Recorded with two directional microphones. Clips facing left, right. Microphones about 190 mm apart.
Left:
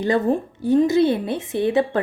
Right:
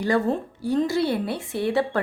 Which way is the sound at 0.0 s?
20° left (ahead or behind).